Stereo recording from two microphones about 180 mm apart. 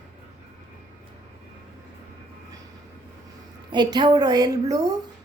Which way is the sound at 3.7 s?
25° right (ahead or behind).